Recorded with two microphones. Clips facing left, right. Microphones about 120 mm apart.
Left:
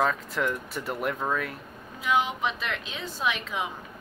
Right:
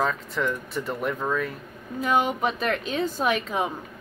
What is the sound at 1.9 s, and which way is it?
A woman's voice, 45° right (ahead or behind).